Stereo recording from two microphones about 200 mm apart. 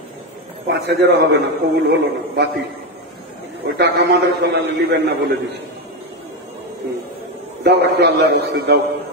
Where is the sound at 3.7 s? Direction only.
55° right (ahead or behind).